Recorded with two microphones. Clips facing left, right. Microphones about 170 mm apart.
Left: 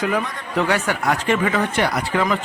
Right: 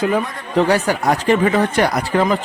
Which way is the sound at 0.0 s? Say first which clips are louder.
Right 4 dB; 30° right (ahead or behind).